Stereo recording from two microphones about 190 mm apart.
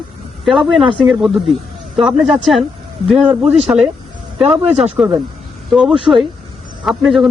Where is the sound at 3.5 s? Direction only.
35° right (ahead or behind).